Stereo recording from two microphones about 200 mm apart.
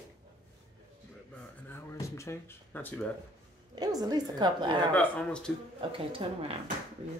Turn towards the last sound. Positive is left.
turn(degrees=-30)  # may be behind; listen again after turning